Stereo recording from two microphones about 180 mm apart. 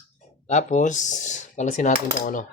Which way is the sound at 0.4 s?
40° left (ahead or behind).